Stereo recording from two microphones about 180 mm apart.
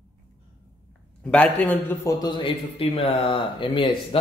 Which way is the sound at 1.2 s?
5° left (ahead or behind).